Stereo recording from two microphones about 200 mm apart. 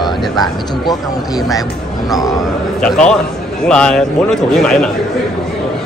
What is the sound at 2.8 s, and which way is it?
A man's voice, 5° left (ahead or behind).